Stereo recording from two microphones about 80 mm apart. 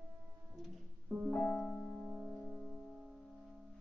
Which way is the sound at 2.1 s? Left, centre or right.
Centre.